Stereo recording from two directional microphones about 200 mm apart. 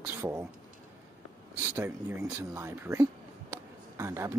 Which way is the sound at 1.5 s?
10° right (ahead or behind).